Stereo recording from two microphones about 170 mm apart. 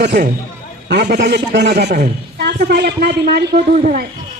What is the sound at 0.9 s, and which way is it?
A man's voice, 80° right.